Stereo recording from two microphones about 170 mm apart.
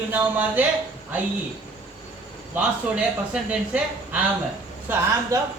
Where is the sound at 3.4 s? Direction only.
10° right (ahead or behind).